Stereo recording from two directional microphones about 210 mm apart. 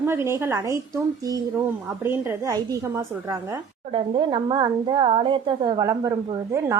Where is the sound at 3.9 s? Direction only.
25° right (ahead or behind).